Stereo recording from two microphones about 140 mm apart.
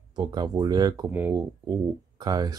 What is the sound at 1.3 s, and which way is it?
Speech, 25° right (ahead or behind).